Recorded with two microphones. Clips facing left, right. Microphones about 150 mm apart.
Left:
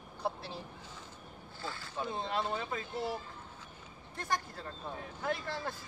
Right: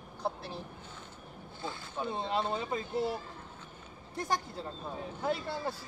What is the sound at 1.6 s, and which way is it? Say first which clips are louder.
Speech: right 2 dB; 20° right (ahead or behind).